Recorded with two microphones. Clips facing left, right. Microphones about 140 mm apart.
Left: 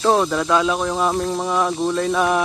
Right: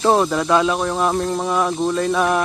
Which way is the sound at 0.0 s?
5° right (ahead or behind).